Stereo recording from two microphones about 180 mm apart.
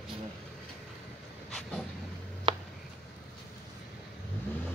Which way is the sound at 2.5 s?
25° right (ahead or behind).